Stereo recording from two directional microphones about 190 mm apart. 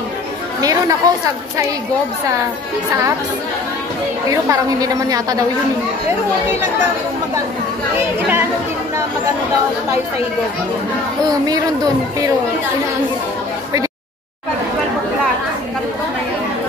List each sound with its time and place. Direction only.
0.6 s a woman's voice: 20° right (ahead or behind)
4.5 s a woman's voice: 20° right (ahead or behind)
11.4 s a woman's voice: 20° right (ahead or behind)